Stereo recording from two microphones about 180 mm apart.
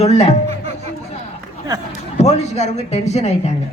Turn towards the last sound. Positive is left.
turn(degrees=35)  # may be behind; listen again after turning